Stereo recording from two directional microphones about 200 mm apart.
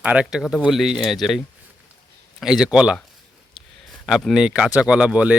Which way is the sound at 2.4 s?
5° right (ahead or behind).